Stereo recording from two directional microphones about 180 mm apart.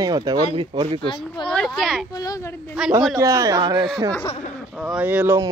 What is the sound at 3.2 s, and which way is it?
Speech, 20° right (ahead or behind).